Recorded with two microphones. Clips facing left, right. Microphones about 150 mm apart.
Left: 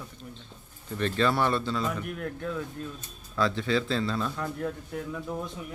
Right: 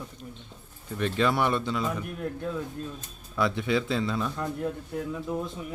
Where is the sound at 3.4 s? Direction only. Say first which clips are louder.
Even; 15° right (ahead or behind).